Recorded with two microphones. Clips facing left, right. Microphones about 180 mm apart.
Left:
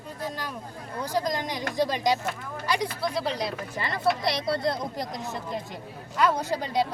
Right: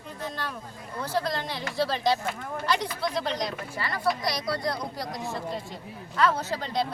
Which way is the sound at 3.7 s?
20° left (ahead or behind).